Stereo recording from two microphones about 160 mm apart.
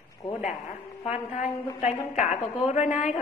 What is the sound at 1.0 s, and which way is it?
A woman's voice, 45° left (ahead or behind).